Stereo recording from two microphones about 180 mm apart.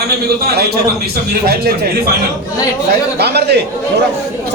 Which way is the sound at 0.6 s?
60° right (ahead or behind).